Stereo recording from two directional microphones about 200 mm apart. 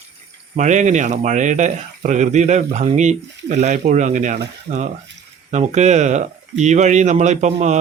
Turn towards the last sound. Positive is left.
turn(degrees=-35)  # may be behind; listen again after turning